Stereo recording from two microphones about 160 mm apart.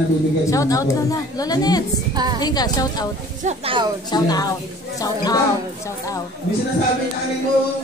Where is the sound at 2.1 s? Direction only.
25° right (ahead or behind).